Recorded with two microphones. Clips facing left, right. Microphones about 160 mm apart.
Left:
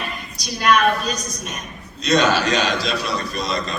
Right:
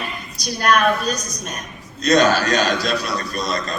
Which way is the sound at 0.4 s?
45° right (ahead or behind).